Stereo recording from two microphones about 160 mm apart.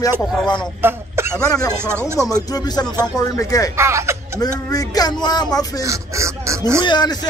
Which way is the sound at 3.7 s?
15° right (ahead or behind).